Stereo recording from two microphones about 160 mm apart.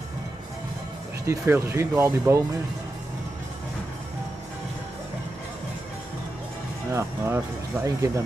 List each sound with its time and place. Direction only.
1.2 s speech: 15° right (ahead or behind)
6.9 s speech: 15° right (ahead or behind)